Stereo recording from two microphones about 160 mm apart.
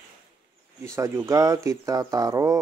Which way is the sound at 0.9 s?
20° right (ahead or behind).